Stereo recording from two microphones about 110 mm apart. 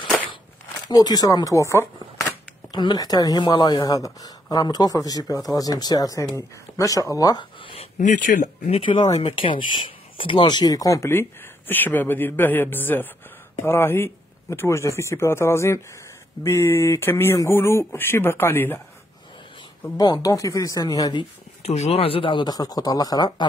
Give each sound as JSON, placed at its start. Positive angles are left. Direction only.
{"t": 0.8, "sound": "speech", "side_deg": 40}
{"t": 2.7, "sound": "speech", "side_deg": 40}
{"t": 7.6, "sound": "speech", "side_deg": 65}
{"t": 9.2, "sound": "speech", "side_deg": 50}
{"t": 20.0, "sound": "speech", "side_deg": 35}
{"t": 21.6, "sound": "speech", "side_deg": 75}